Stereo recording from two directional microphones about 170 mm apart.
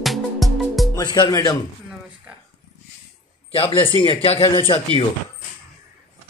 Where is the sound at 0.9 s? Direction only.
25° left (ahead or behind).